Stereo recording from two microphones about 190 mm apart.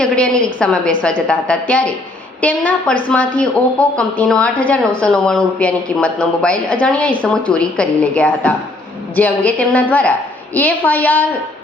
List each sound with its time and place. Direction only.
0.0 s a man's voice: 5° left (ahead or behind)